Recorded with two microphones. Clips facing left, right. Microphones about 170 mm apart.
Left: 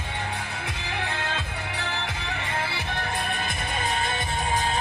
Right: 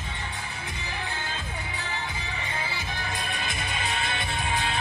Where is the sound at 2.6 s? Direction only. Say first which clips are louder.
Left 4 dB; 65° left (ahead or behind).